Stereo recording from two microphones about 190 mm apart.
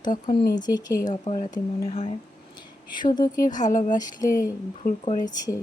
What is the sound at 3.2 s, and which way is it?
Speech, 45° left (ahead or behind).